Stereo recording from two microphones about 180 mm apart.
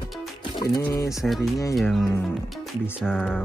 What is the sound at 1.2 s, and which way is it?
Speech, centre (ahead or behind).